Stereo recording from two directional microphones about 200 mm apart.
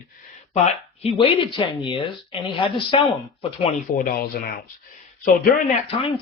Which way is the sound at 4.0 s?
50° left (ahead or behind).